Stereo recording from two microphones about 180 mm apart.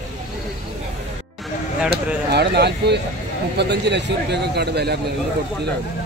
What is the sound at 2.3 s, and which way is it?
A man's voice, 65° right (ahead or behind).